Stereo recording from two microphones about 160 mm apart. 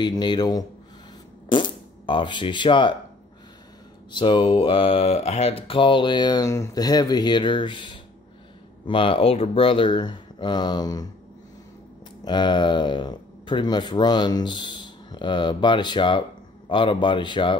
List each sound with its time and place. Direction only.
0.0 s speech: 30° left (ahead or behind)
4.1 s speech: 30° left (ahead or behind)
12.3 s speech: 30° left (ahead or behind)